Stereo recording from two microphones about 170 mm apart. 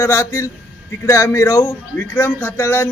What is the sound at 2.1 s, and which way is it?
Speech, 10° left (ahead or behind).